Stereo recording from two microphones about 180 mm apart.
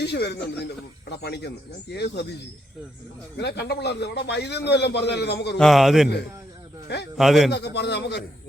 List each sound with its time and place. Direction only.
0.0 s a man's voice: 70° left (ahead or behind)
5.5 s a man's voice: centre (ahead or behind)
6.8 s a man's voice: 70° left (ahead or behind)
7.2 s a man's voice: centre (ahead or behind)
7.5 s a man's voice: 70° left (ahead or behind)